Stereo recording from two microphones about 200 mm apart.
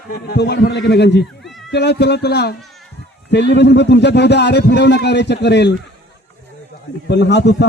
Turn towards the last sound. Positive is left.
turn(degrees=60)  # may be behind; listen again after turning